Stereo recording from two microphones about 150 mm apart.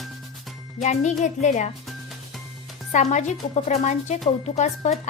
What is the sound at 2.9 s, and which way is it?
Speech, 55° left (ahead or behind).